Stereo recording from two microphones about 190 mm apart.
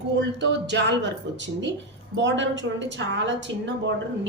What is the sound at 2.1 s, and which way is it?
A woman's voice, 70° right (ahead or behind).